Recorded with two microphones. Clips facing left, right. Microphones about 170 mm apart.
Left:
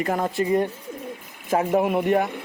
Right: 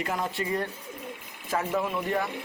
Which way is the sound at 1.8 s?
60° left (ahead or behind).